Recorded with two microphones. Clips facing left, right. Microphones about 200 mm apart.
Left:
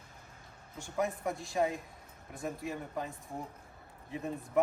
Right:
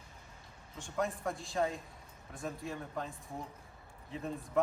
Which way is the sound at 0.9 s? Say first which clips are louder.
Left 2 dB; 20° left (ahead or behind).